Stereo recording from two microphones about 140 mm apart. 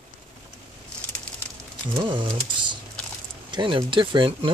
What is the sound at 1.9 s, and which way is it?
Typing, 35° right (ahead or behind).